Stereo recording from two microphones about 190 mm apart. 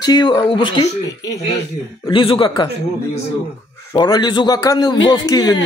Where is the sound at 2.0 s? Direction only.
25° left (ahead or behind).